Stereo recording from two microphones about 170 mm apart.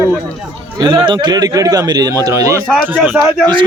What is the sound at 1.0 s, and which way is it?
A man's voice, 25° right (ahead or behind).